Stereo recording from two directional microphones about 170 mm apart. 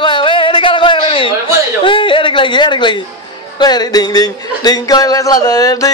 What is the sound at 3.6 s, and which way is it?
Speech, 25° left (ahead or behind).